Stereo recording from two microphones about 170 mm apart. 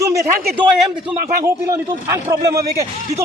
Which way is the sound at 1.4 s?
15° right (ahead or behind).